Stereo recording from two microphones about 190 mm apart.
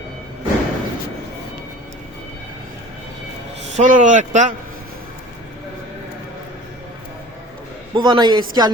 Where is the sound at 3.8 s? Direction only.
40° right (ahead or behind).